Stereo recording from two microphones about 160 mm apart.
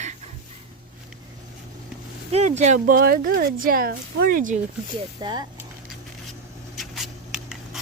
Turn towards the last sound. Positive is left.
turn(degrees=0)  # may be behind; listen again after turning